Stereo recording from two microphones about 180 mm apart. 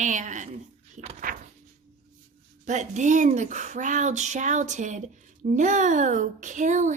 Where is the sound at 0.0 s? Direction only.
45° right (ahead or behind).